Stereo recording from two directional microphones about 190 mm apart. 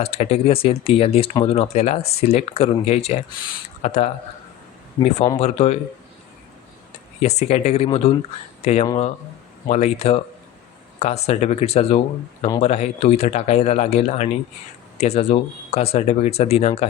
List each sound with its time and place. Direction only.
0.0 s speech: 35° left (ahead or behind)
7.2 s speech: 35° left (ahead or behind)